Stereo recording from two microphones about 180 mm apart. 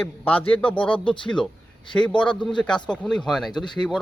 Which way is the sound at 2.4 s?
Centre (ahead or behind).